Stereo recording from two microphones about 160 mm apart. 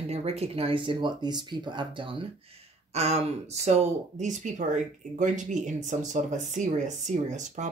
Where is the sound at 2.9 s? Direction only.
40° right (ahead or behind).